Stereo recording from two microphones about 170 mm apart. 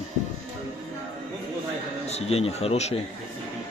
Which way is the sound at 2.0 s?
40° left (ahead or behind).